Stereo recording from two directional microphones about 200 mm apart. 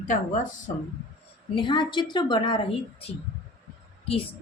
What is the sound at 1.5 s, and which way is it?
Speech, 25° left (ahead or behind).